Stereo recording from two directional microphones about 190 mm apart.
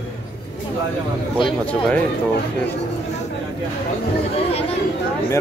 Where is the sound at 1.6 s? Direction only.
5° left (ahead or behind).